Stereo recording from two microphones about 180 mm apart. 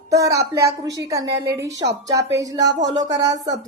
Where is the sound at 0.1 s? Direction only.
20° right (ahead or behind).